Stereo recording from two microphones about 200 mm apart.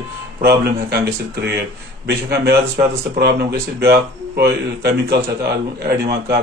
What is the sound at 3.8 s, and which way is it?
A man's voice, 55° right (ahead or behind).